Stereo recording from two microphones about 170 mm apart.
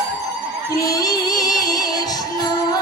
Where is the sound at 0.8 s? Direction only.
20° left (ahead or behind).